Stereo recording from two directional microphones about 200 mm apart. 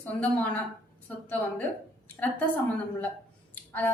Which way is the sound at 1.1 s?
5° left (ahead or behind).